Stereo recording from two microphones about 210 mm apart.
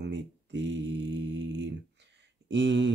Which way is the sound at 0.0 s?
60° right (ahead or behind).